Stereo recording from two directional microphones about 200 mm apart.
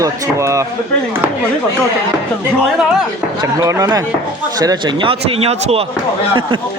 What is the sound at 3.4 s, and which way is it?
Speech, 15° right (ahead or behind).